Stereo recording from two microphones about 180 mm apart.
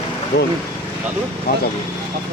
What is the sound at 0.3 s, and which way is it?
Speech, 65° left (ahead or behind).